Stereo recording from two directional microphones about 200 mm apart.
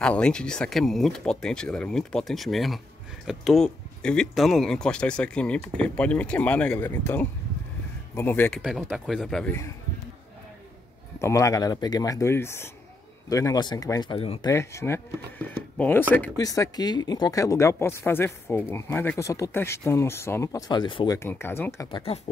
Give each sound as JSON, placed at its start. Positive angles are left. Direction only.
{"t": 0.0, "sound": "speech", "side_deg": 5}
{"t": 11.1, "sound": "speech", "side_deg": 15}
{"t": 14.5, "sound": "speech", "side_deg": 15}
{"t": 21.9, "sound": "speech", "side_deg": 30}